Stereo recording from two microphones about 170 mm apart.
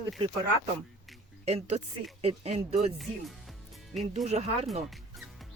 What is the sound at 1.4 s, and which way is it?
Speech, 40° right (ahead or behind).